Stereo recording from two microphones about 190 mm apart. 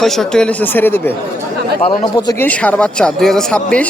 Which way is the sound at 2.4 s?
5° left (ahead or behind).